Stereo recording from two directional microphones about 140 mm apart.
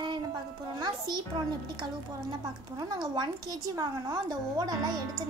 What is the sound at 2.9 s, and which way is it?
A woman's voice, 35° right (ahead or behind).